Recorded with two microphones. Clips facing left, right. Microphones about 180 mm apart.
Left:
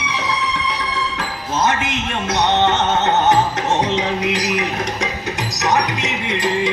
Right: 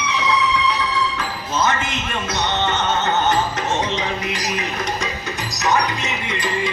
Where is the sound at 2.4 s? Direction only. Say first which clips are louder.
Left 6 dB; 65° left (ahead or behind).